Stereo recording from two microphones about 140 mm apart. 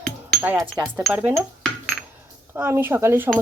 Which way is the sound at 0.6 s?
20° right (ahead or behind).